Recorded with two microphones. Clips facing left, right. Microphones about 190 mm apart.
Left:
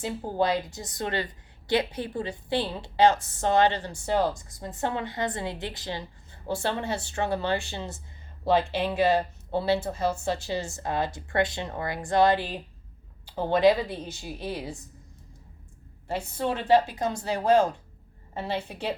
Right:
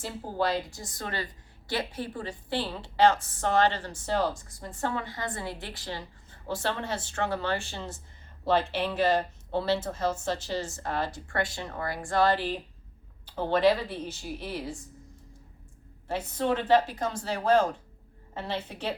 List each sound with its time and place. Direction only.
0.0 s a woman's voice: 20° left (ahead or behind)
16.0 s a woman's voice: 10° left (ahead or behind)